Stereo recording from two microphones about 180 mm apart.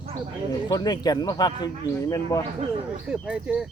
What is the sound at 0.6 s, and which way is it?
A man's voice, 20° left (ahead or behind).